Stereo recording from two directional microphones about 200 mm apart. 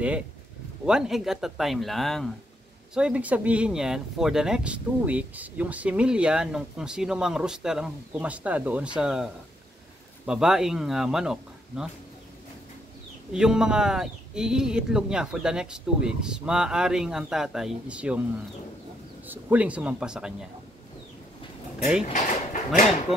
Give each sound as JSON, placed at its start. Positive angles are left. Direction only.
{"t": 0.8, "sound": "speech", "side_deg": -5}
{"t": 13.3, "sound": "speech", "side_deg": -5}
{"t": 19.2, "sound": "speech", "side_deg": -10}
{"t": 21.7, "sound": "speech", "side_deg": -5}
{"t": 22.0, "sound": "speech", "side_deg": 35}